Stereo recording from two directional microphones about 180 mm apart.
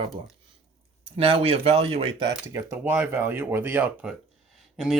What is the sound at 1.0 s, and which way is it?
Speech, 30° right (ahead or behind).